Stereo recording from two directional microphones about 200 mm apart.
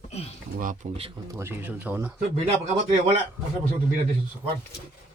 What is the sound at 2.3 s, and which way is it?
Speech, 30° right (ahead or behind).